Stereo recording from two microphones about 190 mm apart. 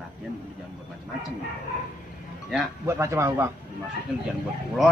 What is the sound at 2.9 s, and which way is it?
Speech, 15° right (ahead or behind).